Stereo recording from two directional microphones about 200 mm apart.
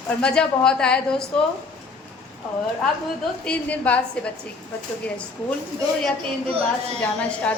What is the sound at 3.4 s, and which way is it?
Speech, 5° left (ahead or behind).